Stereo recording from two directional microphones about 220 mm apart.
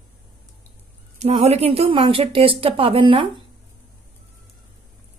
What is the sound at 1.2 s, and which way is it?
Speech, 30° right (ahead or behind).